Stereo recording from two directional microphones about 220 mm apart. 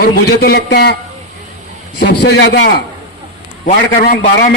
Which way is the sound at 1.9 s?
50° left (ahead or behind).